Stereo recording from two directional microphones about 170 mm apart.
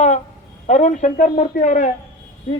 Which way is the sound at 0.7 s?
45° left (ahead or behind).